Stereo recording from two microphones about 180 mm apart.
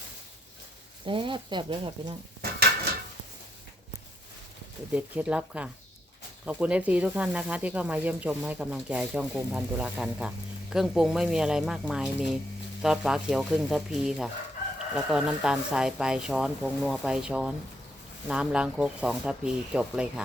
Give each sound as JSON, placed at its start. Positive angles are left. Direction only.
{"t": 1.0, "sound": "speech", "side_deg": -30}
{"t": 4.9, "sound": "speech", "side_deg": -10}